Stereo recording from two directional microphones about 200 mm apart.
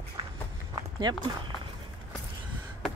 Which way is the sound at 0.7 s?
20° right (ahead or behind).